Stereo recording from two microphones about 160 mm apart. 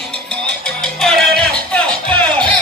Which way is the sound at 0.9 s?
5° left (ahead or behind).